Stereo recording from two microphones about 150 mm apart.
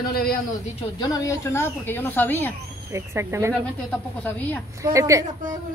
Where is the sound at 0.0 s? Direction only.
85° left.